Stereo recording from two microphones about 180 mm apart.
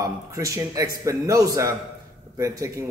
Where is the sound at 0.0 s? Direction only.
15° right (ahead or behind).